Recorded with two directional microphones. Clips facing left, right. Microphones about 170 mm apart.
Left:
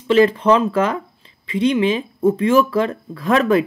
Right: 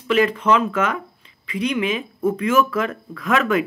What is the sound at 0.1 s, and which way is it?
Speech, 30° left (ahead or behind).